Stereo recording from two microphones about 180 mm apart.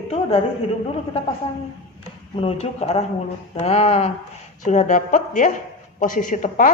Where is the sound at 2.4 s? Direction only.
35° left (ahead or behind).